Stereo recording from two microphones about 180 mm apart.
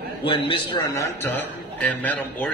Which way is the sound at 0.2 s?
30° left (ahead or behind).